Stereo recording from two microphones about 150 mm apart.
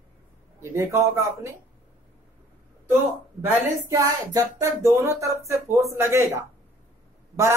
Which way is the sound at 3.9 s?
25° right (ahead or behind).